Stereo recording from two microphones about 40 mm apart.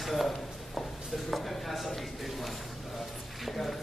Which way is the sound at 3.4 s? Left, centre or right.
Centre.